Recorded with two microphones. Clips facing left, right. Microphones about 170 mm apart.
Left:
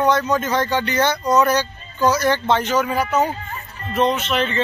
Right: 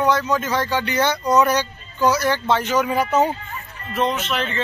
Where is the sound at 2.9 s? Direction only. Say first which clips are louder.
Right 1 dB; 25° right (ahead or behind).